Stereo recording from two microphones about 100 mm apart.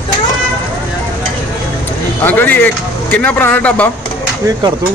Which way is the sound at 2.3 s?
15° left (ahead or behind).